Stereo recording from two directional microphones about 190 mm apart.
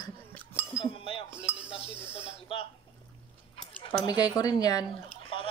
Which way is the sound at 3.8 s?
25° left (ahead or behind).